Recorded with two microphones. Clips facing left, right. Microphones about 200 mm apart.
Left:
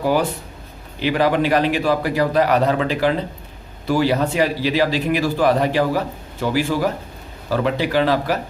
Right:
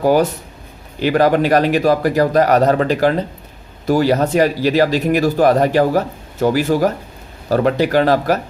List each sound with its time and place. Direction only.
0.0 s speech: 45° right (ahead or behind)